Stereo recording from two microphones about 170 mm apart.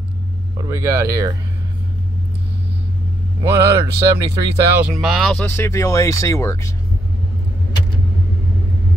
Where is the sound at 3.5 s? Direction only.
20° right (ahead or behind).